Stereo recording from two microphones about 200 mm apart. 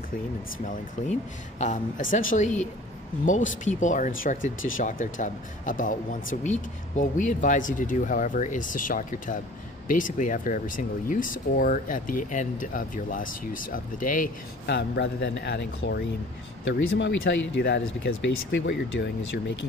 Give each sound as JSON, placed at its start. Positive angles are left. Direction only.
{"t": 1.6, "sound": "speech", "side_deg": 40}
{"t": 14.7, "sound": "speech", "side_deg": 60}